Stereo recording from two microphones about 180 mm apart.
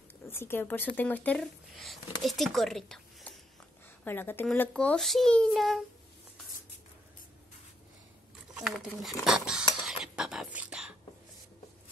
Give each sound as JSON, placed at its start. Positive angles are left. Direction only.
{"t": 0.3, "sound": "a child's voice", "side_deg": 10}
{"t": 8.5, "sound": "cutlery", "side_deg": -5}